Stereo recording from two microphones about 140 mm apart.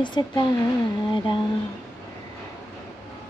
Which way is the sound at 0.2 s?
35° left (ahead or behind).